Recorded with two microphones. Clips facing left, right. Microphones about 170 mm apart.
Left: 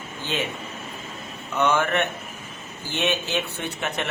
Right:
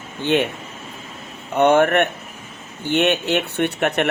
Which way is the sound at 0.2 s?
65° right (ahead or behind).